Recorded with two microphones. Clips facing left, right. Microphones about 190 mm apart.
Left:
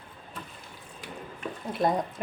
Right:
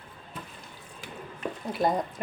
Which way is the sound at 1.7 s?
Centre (ahead or behind).